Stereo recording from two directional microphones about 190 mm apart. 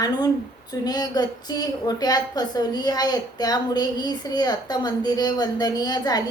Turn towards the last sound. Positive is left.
turn(degrees=20)  # may be behind; listen again after turning